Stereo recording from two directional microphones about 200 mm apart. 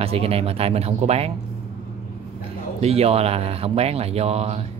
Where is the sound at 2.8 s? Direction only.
30° right (ahead or behind).